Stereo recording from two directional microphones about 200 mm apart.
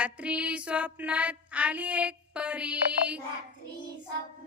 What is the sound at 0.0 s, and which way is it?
Child singing, 5° right (ahead or behind).